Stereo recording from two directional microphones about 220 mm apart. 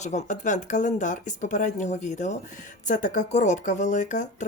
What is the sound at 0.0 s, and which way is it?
Speech, 35° left (ahead or behind).